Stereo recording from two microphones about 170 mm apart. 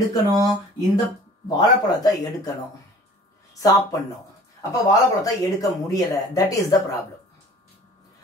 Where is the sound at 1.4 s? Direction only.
20° left (ahead or behind).